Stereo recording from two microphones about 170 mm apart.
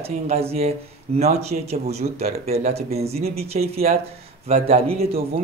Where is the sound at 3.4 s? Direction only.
65° right (ahead or behind).